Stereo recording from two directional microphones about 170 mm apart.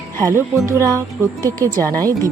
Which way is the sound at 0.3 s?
15° right (ahead or behind).